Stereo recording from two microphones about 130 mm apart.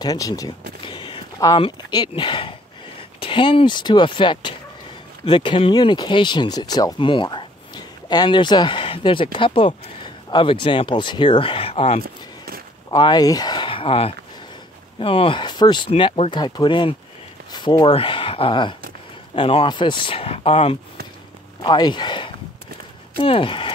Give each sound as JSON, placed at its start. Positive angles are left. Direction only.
{"t": 0.0, "sound": "speech", "side_deg": 30}
{"t": 0.8, "sound": "speech", "side_deg": 40}
{"t": 12.9, "sound": "speech", "side_deg": 35}
{"t": 15.9, "sound": "speech", "side_deg": 45}
{"t": 21.6, "sound": "speech", "side_deg": 35}